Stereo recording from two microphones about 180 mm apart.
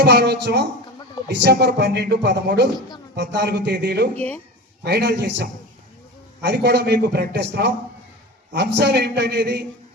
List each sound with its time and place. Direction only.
0.0 s a man's voice: 65° right (ahead or behind)